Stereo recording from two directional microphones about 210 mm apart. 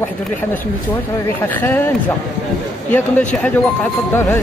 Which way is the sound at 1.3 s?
10° left (ahead or behind).